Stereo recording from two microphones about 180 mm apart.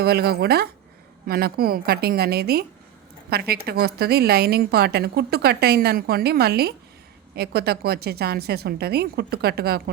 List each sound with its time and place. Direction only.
0.0 s a woman's voice: 60° right (ahead or behind)